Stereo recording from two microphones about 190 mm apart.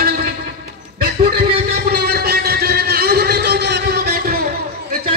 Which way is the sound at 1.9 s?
55° right (ahead or behind).